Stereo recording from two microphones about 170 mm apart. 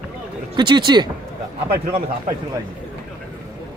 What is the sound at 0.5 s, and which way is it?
Speech, 25° right (ahead or behind).